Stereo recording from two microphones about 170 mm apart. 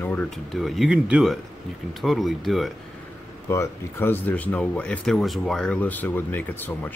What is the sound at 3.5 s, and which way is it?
Speech, 15° left (ahead or behind).